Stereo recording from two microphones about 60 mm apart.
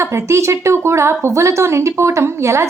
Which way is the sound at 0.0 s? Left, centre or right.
Right.